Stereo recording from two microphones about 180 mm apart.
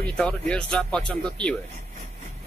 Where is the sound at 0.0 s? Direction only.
5° left (ahead or behind).